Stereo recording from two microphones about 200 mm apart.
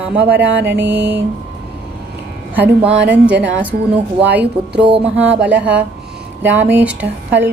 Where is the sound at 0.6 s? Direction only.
55° right (ahead or behind).